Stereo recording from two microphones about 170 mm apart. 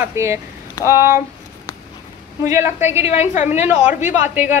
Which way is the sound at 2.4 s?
15° right (ahead or behind).